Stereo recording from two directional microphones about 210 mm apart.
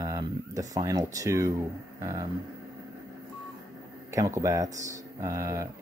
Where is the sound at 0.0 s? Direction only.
15° right (ahead or behind).